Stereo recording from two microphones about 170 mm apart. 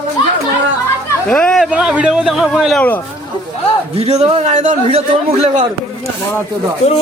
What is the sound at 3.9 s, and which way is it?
A man's voice, 40° right (ahead or behind).